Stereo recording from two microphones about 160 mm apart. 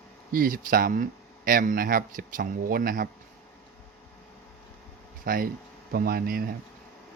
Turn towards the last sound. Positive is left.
turn(degrees=-65)  # may be behind; listen again after turning